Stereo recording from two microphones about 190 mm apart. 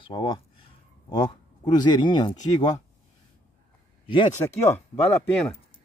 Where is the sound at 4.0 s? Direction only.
25° left (ahead or behind).